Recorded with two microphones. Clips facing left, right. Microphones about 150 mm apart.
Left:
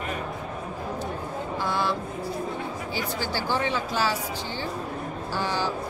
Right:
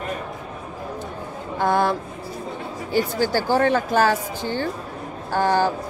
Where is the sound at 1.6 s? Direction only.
50° right (ahead or behind).